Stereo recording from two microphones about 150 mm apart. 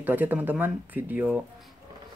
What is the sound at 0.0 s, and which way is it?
Speech, 10° right (ahead or behind).